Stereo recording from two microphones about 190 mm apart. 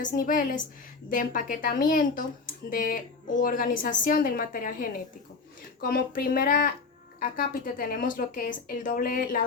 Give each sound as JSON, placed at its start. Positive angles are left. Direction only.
{"t": 0.0, "sound": "speech", "side_deg": 45}